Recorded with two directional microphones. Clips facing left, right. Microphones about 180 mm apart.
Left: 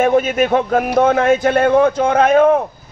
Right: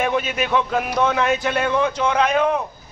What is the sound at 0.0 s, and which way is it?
Speech, 45° left (ahead or behind).